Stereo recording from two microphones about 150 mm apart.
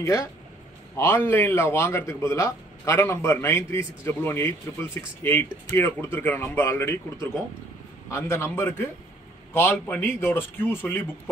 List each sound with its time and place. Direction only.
0.0 s a man's voice: 20° left (ahead or behind)